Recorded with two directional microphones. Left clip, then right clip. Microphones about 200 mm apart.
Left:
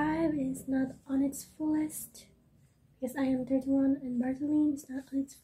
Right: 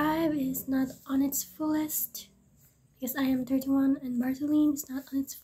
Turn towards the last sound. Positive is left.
turn(degrees=-20)  # may be behind; listen again after turning